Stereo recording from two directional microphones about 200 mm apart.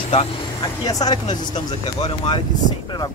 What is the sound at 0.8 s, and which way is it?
Speech, 20° left (ahead or behind).